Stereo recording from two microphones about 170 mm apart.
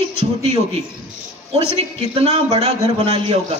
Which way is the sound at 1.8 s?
40° right (ahead or behind).